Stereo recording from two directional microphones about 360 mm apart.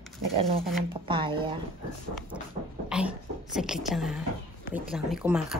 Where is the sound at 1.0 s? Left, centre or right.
Centre.